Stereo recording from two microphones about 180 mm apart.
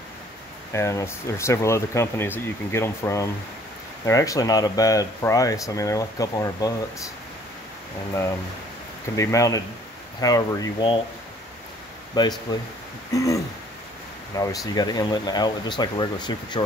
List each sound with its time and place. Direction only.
0.7 s speech: 15° left (ahead or behind)
9.1 s speech: 15° left (ahead or behind)
12.2 s speech: 20° left (ahead or behind)
14.4 s speech: 20° left (ahead or behind)